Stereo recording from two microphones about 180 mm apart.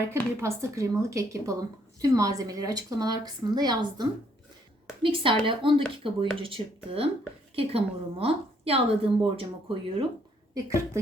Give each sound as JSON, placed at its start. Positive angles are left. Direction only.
{"t": 0.1, "sound": "a woman's voice", "side_deg": -15}
{"t": 10.5, "sound": "speech", "side_deg": -15}